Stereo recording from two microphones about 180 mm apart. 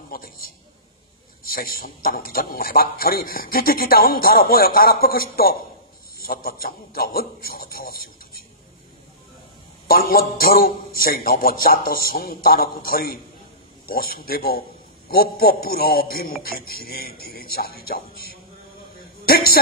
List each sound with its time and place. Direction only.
0.1 s a sound: 55° left (ahead or behind)
1.4 s a man's voice: 55° left (ahead or behind)
9.8 s a man's voice: 55° left (ahead or behind)